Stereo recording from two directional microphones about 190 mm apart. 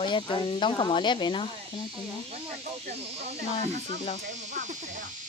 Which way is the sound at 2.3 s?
35° right (ahead or behind).